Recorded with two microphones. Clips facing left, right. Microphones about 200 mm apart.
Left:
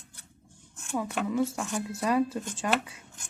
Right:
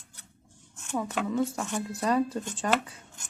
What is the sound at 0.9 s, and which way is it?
Speech, 10° left (ahead or behind).